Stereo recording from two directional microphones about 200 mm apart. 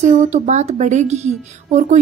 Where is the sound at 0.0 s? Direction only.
35° right (ahead or behind).